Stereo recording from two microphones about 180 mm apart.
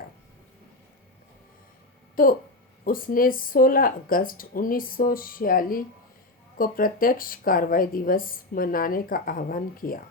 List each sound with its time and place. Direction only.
2.2 s speech: 50° left (ahead or behind)